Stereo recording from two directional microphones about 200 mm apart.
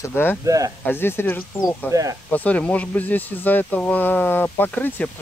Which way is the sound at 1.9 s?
15° right (ahead or behind).